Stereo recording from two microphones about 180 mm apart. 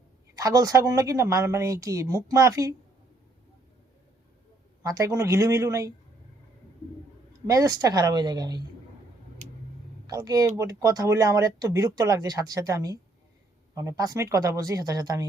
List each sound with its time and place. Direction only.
0.3 s a woman's voice: 20° right (ahead or behind)
4.8 s a woman's voice: 20° right (ahead or behind)
7.4 s speech: 20° right (ahead or behind)
10.1 s speech: 20° right (ahead or behind)